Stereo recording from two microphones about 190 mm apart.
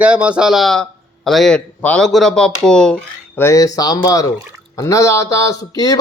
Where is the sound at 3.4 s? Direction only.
15° left (ahead or behind).